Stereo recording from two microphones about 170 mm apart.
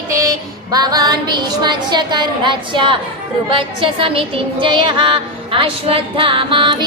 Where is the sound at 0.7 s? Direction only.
25° right (ahead or behind).